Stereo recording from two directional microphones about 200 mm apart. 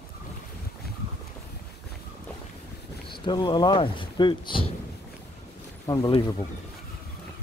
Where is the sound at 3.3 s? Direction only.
20° left (ahead or behind).